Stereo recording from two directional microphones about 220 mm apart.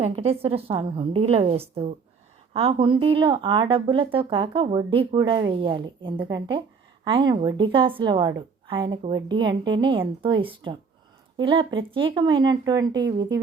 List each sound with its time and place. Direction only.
0.0 s speech: 25° right (ahead or behind)